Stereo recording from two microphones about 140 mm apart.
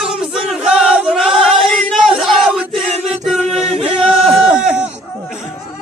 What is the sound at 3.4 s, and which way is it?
Music, 50° right (ahead or behind).